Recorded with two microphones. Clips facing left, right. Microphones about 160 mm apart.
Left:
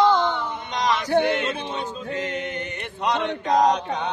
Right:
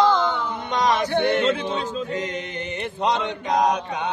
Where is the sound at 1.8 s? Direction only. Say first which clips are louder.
Right 4 dB; 90° right.